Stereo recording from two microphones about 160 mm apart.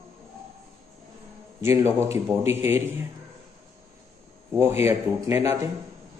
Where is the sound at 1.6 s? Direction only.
15° right (ahead or behind).